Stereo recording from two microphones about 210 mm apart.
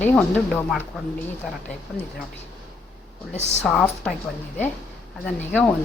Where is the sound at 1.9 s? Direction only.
5° right (ahead or behind).